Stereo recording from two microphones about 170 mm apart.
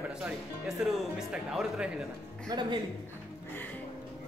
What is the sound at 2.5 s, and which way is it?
Speech, 25° right (ahead or behind).